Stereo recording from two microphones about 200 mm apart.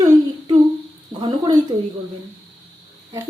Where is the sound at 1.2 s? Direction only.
20° right (ahead or behind).